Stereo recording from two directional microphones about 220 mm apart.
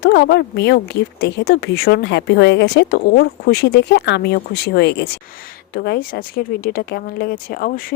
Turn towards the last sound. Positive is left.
turn(degrees=40)  # may be behind; listen again after turning